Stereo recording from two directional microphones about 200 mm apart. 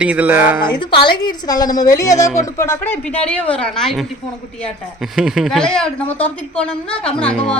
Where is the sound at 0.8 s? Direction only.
25° left (ahead or behind); by 4.0 s centre (ahead or behind).